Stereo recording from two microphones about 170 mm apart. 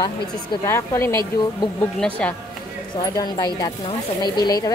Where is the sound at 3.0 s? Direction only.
25° left (ahead or behind).